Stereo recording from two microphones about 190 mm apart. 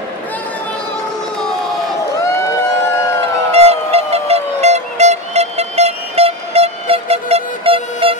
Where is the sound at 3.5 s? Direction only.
30° right (ahead or behind).